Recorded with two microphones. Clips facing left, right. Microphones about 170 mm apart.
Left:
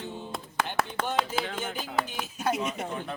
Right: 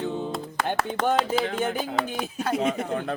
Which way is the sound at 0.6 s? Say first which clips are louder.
Right 10 dB; 55° right (ahead or behind).